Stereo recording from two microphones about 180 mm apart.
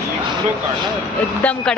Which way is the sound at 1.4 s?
5° left (ahead or behind).